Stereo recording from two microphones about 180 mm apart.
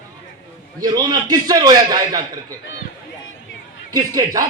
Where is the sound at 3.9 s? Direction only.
20° right (ahead or behind).